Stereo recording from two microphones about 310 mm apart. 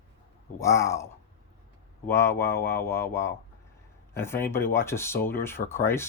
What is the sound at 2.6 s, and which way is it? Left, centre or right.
Speech, left.